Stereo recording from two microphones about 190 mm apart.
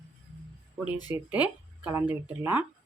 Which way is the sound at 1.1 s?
10° right (ahead or behind).